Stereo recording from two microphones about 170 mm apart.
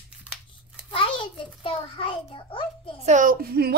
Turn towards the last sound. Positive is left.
turn(degrees=-65)  # may be behind; listen again after turning